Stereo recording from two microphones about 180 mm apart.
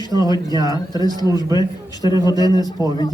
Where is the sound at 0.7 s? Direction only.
20° left (ahead or behind).